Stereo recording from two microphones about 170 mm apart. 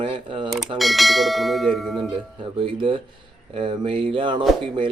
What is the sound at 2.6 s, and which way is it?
Speech, 30° right (ahead or behind).